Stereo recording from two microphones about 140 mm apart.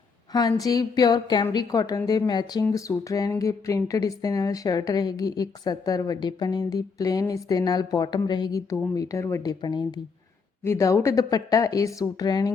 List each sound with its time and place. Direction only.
0.3 s speech: 25° left (ahead or behind)
10.6 s speech: 20° left (ahead or behind)